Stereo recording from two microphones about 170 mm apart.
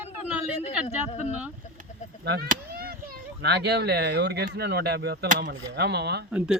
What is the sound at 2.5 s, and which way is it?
Speech, 60° right (ahead or behind).